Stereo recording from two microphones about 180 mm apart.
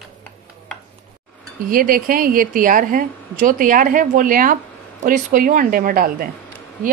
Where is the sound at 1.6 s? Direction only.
50° right (ahead or behind).